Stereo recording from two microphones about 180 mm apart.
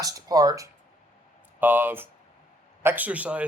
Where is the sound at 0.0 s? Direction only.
20° right (ahead or behind).